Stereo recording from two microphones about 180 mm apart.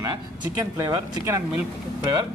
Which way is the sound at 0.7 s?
20° right (ahead or behind).